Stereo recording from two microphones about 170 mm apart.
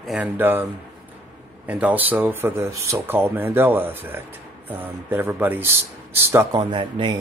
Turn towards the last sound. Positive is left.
turn(degrees=-25)  # may be behind; listen again after turning